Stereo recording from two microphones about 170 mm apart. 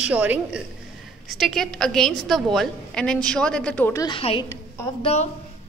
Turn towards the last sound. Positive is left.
turn(degrees=40)  # may be behind; listen again after turning